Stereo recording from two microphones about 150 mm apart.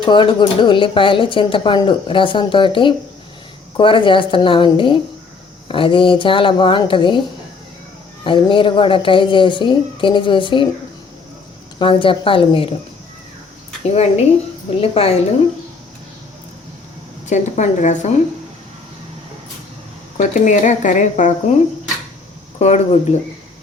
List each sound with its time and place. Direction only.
0.0 s speech: 30° left (ahead or behind)
8.2 s speech: 35° left (ahead or behind)
11.8 s speech: 35° left (ahead or behind)
13.8 s a woman's voice: 45° left (ahead or behind)
17.2 s a woman's voice: 55° left (ahead or behind)
20.1 s speech: 55° left (ahead or behind)
22.5 s a woman's voice: 45° left (ahead or behind)